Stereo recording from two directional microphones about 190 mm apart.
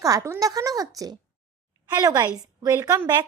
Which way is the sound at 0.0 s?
15° right (ahead or behind).